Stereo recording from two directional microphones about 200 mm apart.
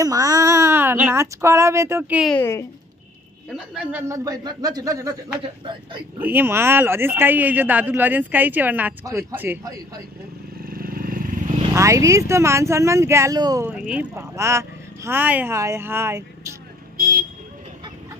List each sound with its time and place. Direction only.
0.0 s a child's voice: 15° right (ahead or behind)
2.3 s speech: 10° left (ahead or behind)
3.4 s speech: 5° right (ahead or behind); by 6.0 s 25° right (ahead or behind)
6.1 s speech: 10° right (ahead or behind)
10.6 s vehicle: 45° right (ahead or behind)
11.7 s speech: 15° right (ahead or behind)
13.7 s speech: 5° right (ahead or behind)
16.9 s vehicle: 45° right (ahead or behind)